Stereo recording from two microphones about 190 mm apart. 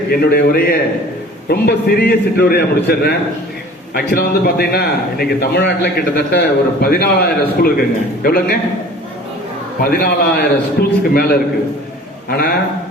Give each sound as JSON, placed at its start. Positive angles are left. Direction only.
{"t": 0.1, "sound": "a man's voice", "side_deg": 55}
{"t": 9.9, "sound": "a man's voice", "side_deg": 55}